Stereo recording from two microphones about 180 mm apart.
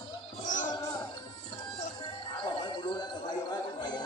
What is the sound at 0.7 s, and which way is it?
Music, 25° left (ahead or behind).